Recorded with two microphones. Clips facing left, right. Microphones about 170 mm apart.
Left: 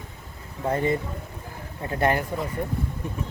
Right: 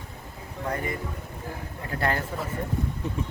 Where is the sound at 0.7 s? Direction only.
25° left (ahead or behind).